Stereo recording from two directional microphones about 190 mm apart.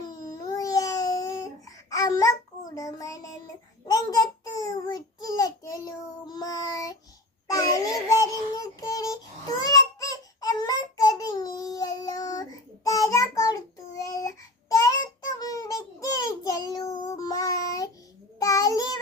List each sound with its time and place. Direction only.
0.3 s babbling: 20° left (ahead or behind)
2.7 s child singing: 20° left (ahead or behind)
8.5 s babbling: 20° left (ahead or behind)
15.3 s child singing: 20° left (ahead or behind)